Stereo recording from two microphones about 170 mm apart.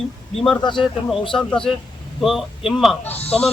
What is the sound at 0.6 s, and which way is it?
Speech, 25° left (ahead or behind).